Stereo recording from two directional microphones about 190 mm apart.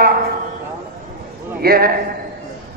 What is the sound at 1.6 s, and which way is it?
Speech, 55° right (ahead or behind).